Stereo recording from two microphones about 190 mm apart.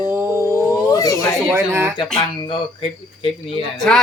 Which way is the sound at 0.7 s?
20° left (ahead or behind).